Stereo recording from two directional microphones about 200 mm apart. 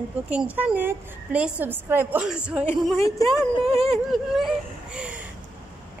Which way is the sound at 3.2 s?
20° left (ahead or behind).